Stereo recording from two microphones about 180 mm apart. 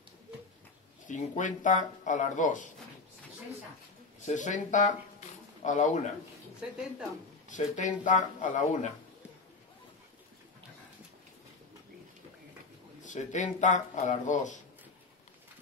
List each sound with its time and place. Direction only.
1.0 s speech: 45° left (ahead or behind)
4.3 s speech: 45° left (ahead or behind)
6.6 s speech: 5° right (ahead or behind)
7.4 s speech: 45° left (ahead or behind)
13.0 s speech: 45° left (ahead or behind)